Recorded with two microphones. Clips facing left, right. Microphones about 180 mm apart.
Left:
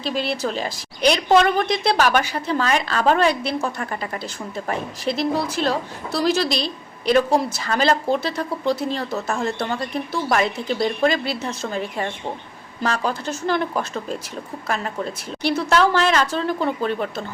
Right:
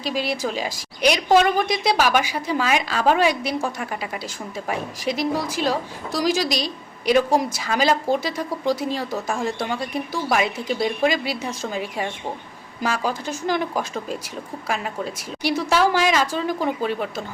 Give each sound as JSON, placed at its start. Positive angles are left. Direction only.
{"t": 0.0, "sound": "a woman's voice", "side_deg": -10}